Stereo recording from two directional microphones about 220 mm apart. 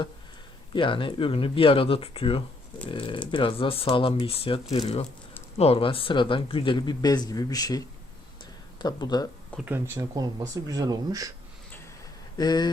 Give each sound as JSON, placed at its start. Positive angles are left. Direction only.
{"t": 0.7, "sound": "speech", "side_deg": 20}
{"t": 9.6, "sound": "speech", "side_deg": -10}
{"t": 12.4, "sound": "speech", "side_deg": 20}